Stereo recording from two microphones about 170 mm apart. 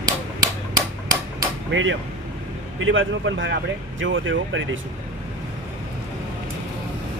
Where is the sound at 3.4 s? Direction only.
90° right.